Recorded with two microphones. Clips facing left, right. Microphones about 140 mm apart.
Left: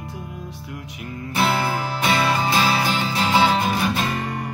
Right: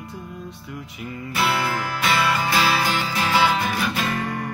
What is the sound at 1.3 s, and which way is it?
Music, 25° left (ahead or behind).